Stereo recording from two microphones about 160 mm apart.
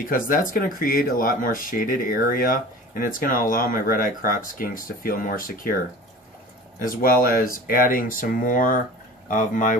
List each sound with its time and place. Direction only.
0.0 s speech: 60° left (ahead or behind)
6.8 s speech: 60° left (ahead or behind)